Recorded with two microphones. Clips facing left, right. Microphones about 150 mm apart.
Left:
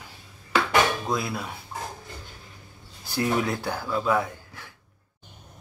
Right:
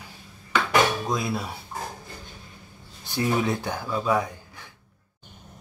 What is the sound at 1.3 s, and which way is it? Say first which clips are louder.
Speech: right 3 dB; 30° right (ahead or behind).